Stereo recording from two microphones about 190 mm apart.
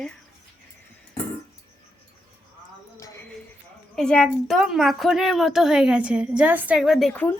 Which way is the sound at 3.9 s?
5° left (ahead or behind).